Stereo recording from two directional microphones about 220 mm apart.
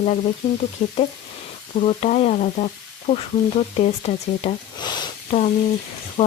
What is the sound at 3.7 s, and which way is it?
Speech, 30° left (ahead or behind).